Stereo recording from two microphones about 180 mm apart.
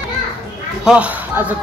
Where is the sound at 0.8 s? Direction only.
5° right (ahead or behind).